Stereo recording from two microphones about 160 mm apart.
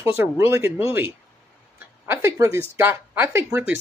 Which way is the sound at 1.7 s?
15° right (ahead or behind).